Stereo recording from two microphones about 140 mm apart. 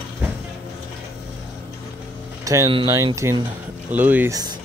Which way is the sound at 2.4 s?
20° right (ahead or behind).